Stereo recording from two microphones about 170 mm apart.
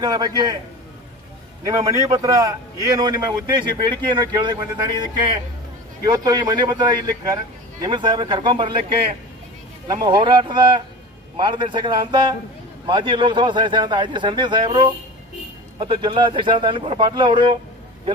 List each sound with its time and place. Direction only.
0.0 s speech: 25° right (ahead or behind)
1.7 s speech: 20° right (ahead or behind)
9.8 s speech: 30° right (ahead or behind)